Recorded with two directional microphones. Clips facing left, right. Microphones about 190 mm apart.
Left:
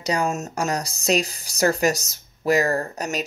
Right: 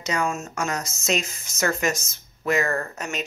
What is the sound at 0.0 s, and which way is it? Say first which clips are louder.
Speech: left 3 dB; 35° left (ahead or behind).